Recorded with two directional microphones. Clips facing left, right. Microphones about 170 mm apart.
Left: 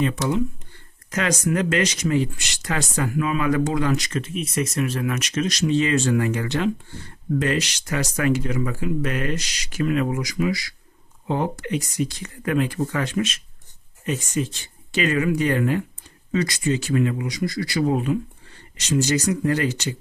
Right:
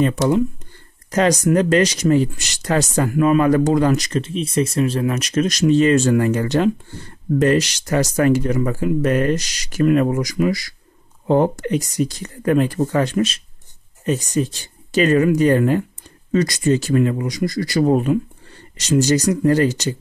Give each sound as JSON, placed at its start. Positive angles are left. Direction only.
{"t": 1.1, "sound": "speech", "side_deg": -35}
{"t": 18.8, "sound": "speech", "side_deg": -40}